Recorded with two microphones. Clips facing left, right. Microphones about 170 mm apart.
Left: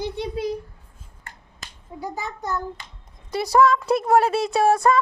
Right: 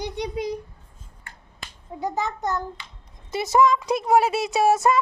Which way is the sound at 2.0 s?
20° right (ahead or behind).